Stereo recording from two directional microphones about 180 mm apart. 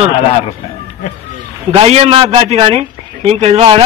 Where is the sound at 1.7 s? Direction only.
35° right (ahead or behind).